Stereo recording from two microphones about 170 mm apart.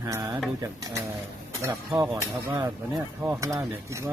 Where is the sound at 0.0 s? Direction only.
20° right (ahead or behind).